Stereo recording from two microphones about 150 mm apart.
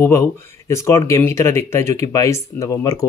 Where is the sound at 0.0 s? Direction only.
15° left (ahead or behind).